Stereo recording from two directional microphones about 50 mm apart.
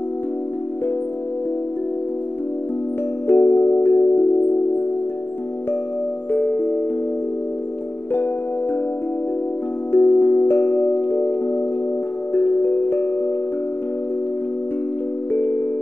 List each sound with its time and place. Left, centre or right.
3.3 s music: left
3.8 s singing bowl: left
6.3 s music: left
9.9 s music: left
11.1 s singing bowl: left